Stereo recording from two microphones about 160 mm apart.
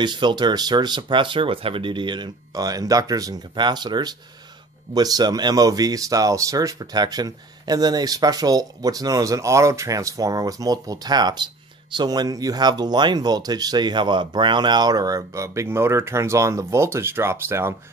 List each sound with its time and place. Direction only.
0.0 s speech: 30° right (ahead or behind)